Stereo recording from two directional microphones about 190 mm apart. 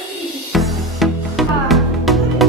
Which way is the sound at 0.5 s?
Centre (ahead or behind).